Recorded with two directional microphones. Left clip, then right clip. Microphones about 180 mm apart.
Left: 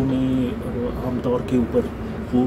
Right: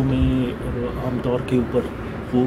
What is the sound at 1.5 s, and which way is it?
Speech, 5° right (ahead or behind).